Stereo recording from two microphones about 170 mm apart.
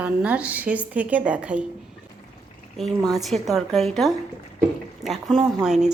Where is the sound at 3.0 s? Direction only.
20° right (ahead or behind).